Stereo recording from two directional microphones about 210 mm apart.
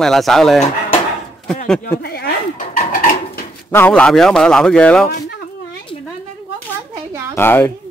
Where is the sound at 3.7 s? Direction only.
5° left (ahead or behind).